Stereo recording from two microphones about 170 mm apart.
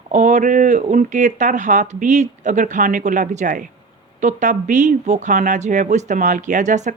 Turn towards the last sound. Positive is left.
turn(degrees=-45)  # may be behind; listen again after turning